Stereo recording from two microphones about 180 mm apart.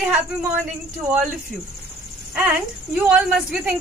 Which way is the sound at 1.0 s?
5° right (ahead or behind).